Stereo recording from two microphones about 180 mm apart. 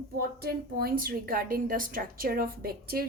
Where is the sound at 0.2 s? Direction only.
55° right (ahead or behind).